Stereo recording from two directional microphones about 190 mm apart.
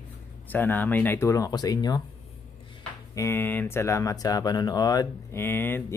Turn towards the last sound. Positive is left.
turn(degrees=10)  # may be behind; listen again after turning